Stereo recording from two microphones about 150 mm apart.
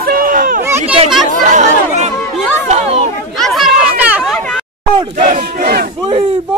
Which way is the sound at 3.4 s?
Centre (ahead or behind).